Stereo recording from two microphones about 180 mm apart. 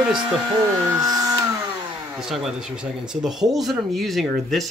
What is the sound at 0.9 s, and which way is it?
Speech, 20° right (ahead or behind).